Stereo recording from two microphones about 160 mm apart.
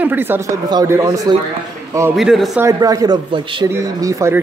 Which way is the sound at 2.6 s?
25° right (ahead or behind).